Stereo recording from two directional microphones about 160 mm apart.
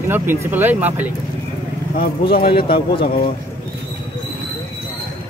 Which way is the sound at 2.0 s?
70° left (ahead or behind).